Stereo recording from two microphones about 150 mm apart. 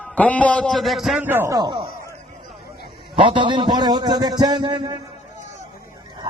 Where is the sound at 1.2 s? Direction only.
15° right (ahead or behind).